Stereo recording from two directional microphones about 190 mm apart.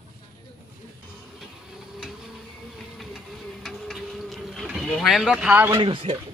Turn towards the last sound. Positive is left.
turn(degrees=-25)  # may be behind; listen again after turning